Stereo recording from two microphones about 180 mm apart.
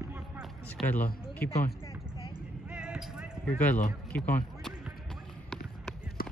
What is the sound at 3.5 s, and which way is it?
Speech, 10° left (ahead or behind).